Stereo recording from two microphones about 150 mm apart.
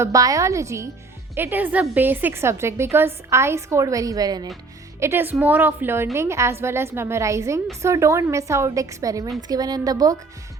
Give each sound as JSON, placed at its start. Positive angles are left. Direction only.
{"t": 0.0, "sound": "a woman's voice", "side_deg": -20}